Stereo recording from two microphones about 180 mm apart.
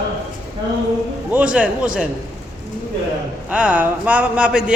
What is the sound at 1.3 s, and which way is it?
Speech, 5° right (ahead or behind).